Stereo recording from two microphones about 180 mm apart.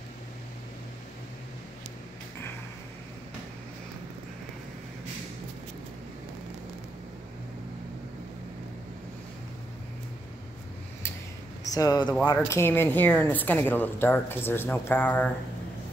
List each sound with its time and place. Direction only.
11.6 s speech: 20° left (ahead or behind)